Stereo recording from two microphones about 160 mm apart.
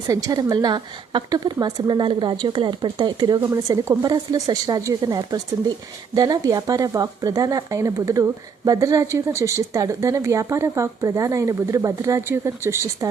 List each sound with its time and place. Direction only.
0.1 s speech: 25° right (ahead or behind)